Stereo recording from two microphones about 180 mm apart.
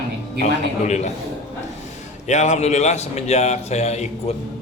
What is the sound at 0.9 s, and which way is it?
Speech, 40° left (ahead or behind).